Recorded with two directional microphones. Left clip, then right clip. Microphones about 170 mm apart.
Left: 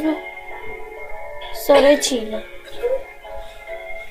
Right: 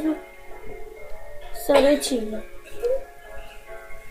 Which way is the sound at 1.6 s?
25° right (ahead or behind).